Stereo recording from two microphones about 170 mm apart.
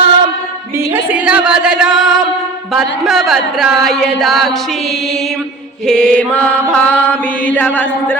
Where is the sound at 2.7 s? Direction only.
Centre (ahead or behind).